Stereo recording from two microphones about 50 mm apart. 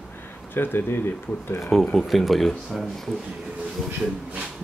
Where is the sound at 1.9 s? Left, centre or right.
Centre.